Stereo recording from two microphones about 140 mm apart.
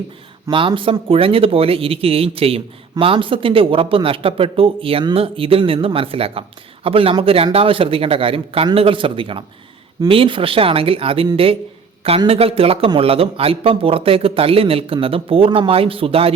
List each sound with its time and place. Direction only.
0.5 s speech: 35° right (ahead or behind)